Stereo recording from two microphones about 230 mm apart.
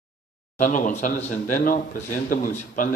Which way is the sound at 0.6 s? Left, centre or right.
Left.